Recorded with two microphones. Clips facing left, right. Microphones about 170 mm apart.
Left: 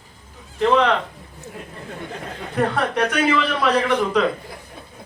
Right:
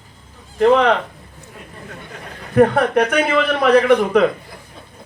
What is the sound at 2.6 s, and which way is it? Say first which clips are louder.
A man's voice: right 7 dB; 55° right (ahead or behind).